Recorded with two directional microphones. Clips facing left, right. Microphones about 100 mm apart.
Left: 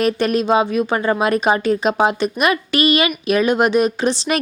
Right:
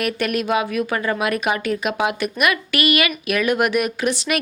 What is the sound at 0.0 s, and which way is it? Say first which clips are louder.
Speech: left 5 dB; 30° left (ahead or behind).